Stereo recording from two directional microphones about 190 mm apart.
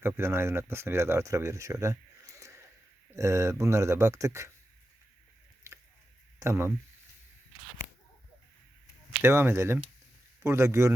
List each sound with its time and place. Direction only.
0.0 s speech: 10° right (ahead or behind)
5.7 s a sound: 15° right (ahead or behind)
6.4 s speech: 15° right (ahead or behind)
9.2 s speech: 10° right (ahead or behind)